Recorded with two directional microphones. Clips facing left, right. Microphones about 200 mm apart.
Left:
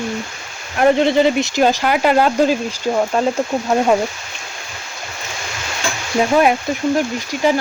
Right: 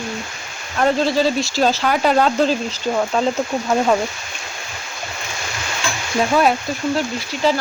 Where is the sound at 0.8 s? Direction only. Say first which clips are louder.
Left 4 dB; 20° left (ahead or behind).